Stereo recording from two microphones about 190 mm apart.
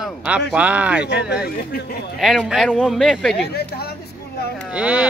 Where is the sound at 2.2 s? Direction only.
Centre (ahead or behind).